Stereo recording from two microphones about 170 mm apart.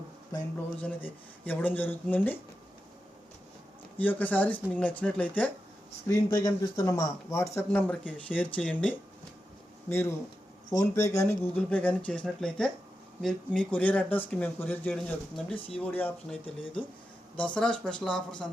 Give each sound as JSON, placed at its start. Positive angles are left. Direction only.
{"t": 0.8, "sound": "speech", "side_deg": 10}
{"t": 3.9, "sound": "speech", "side_deg": 10}